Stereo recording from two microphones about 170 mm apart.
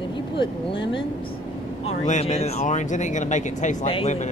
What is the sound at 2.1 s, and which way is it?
Speech, 40° left (ahead or behind).